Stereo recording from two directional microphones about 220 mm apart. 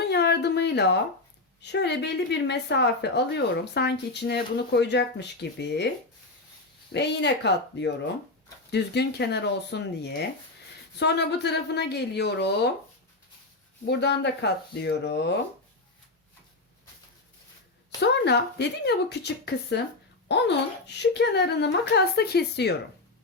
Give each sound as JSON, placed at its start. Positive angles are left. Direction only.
{"t": 0.1, "sound": "a sound", "side_deg": 50}
{"t": 1.6, "sound": "speech", "side_deg": 50}
{"t": 6.9, "sound": "speech", "side_deg": 50}
{"t": 13.8, "sound": "speech", "side_deg": 50}
{"t": 18.0, "sound": "speech", "side_deg": 50}